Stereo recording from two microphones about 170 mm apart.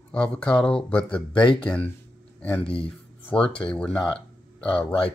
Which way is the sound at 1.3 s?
30° left (ahead or behind).